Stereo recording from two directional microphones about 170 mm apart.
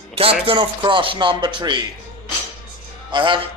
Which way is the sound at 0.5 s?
30° right (ahead or behind).